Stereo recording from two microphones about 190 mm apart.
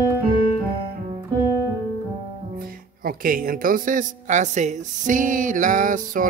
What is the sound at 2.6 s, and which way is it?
Speech, 50° right (ahead or behind).